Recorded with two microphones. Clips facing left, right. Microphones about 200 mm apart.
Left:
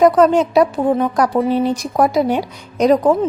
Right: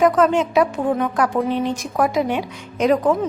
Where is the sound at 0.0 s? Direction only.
35° left (ahead or behind).